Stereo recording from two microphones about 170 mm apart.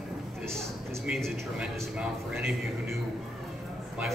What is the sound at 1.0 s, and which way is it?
A man's voice, 5° right (ahead or behind).